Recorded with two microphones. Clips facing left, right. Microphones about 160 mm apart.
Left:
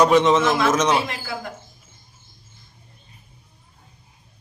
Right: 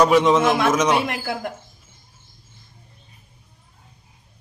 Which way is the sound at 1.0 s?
65° right (ahead or behind).